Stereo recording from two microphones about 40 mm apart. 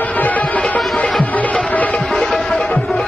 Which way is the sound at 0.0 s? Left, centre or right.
Left.